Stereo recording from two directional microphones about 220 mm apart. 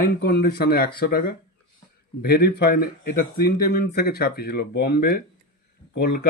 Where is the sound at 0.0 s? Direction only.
45° left (ahead or behind).